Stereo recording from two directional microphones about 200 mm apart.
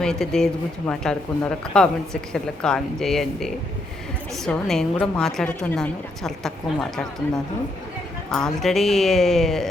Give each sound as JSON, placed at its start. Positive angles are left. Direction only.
{"t": 0.0, "sound": "a woman's voice", "side_deg": 5}
{"t": 8.3, "sound": "a woman's voice", "side_deg": 0}